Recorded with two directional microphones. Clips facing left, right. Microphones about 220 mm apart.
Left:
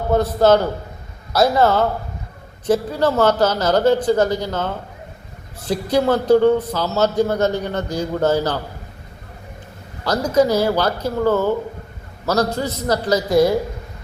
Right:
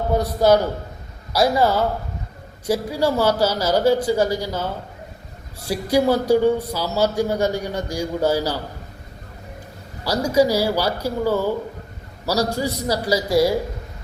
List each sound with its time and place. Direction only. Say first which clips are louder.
0.1 s a man's voice: left 2 dB; 10° right (ahead or behind)
10.0 s a man's voice: left 1 dB; 10° right (ahead or behind)